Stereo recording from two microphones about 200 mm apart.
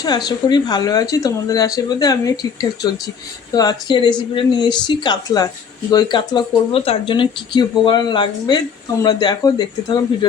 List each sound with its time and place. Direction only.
0.0 s speech: 20° left (ahead or behind)